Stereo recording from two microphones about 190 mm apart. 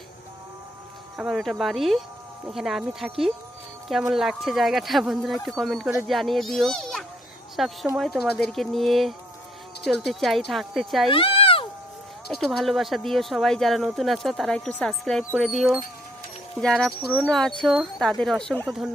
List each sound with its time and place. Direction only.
1.1 s speech: centre (ahead or behind)
11.1 s cat: 30° left (ahead or behind)
12.3 s speech: centre (ahead or behind)